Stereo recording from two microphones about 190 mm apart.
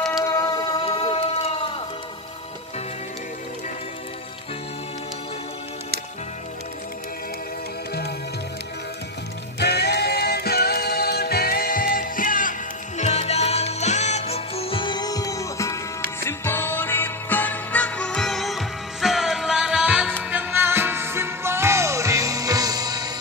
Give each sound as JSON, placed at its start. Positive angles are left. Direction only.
{"t": 0.3, "sound": "music", "side_deg": 20}
{"t": 9.6, "sound": "music", "side_deg": 60}